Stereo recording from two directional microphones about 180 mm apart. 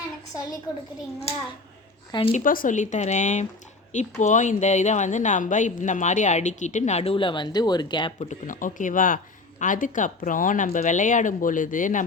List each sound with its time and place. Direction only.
2.1 s a woman's voice: 30° left (ahead or behind)
2.4 s a woman's voice: 50° left (ahead or behind); by 8.3 s 25° left (ahead or behind)
8.3 s speech: 45° left (ahead or behind)